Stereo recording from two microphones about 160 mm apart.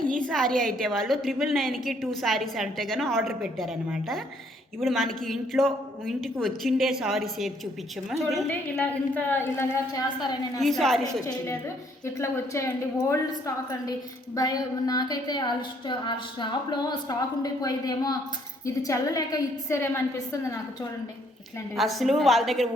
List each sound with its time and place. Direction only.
0.3 s a woman's voice: 5° left (ahead or behind)
8.7 s a woman's voice: 10° left (ahead or behind)
10.6 s a woman's voice: centre (ahead or behind)
12.0 s a woman's voice: 15° left (ahead or behind)
14.3 s a woman's voice: 25° left (ahead or behind)
21.8 s a woman's voice: centre (ahead or behind)